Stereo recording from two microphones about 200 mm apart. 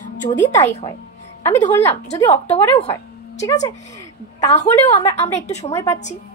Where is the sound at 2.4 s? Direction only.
30° left (ahead or behind).